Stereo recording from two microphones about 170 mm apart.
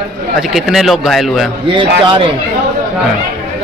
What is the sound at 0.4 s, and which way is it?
A man's voice, centre (ahead or behind).